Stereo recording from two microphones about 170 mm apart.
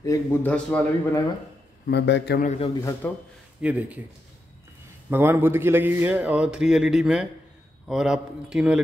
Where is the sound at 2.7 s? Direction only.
20° left (ahead or behind).